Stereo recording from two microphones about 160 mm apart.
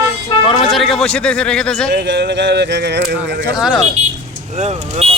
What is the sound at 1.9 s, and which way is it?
Speech, 90° right.